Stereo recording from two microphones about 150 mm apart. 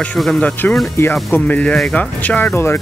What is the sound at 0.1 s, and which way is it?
Speech, 5° left (ahead or behind).